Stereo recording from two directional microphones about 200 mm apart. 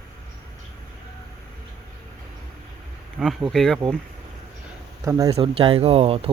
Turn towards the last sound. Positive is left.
turn(degrees=-30)  # may be behind; listen again after turning